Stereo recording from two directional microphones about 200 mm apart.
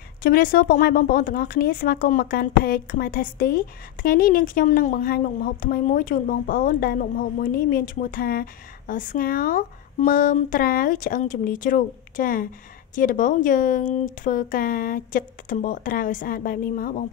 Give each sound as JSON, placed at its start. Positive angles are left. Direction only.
{"t": 0.2, "sound": "speech", "side_deg": 45}